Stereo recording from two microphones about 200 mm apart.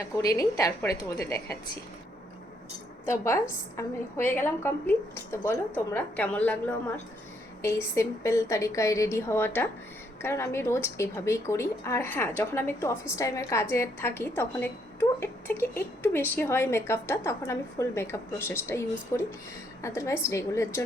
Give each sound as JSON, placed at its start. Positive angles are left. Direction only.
{"t": 0.0, "sound": "a woman's voice", "side_deg": 15}
{"t": 3.1, "sound": "a woman's voice", "side_deg": 15}